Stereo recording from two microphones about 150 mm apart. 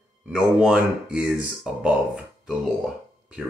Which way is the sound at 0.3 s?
5° right (ahead or behind).